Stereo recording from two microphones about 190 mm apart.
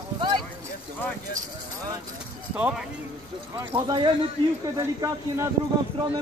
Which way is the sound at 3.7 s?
25° right (ahead or behind).